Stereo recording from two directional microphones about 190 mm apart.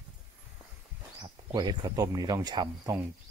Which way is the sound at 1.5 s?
20° right (ahead or behind).